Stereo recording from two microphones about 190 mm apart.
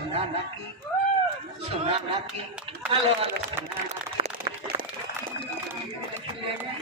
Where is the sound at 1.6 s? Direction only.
30° right (ahead or behind).